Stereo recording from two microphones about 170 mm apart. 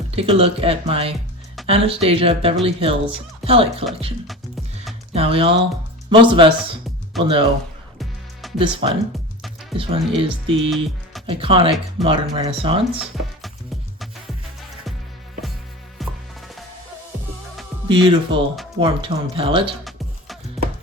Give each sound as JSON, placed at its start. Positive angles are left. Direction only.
{"t": 0.2, "sound": "speech", "side_deg": -35}
{"t": 5.1, "sound": "speech", "side_deg": -35}
{"t": 7.9, "sound": "music", "side_deg": 0}
{"t": 8.5, "sound": "speech", "side_deg": -30}
{"t": 12.0, "sound": "speech", "side_deg": 0}
{"t": 12.5, "sound": "speech", "side_deg": -35}
{"t": 12.9, "sound": "speech", "side_deg": -5}
{"t": 16.0, "sound": "music", "side_deg": 0}
{"t": 17.8, "sound": "speech", "side_deg": -30}
{"t": 19.8, "sound": "music", "side_deg": 0}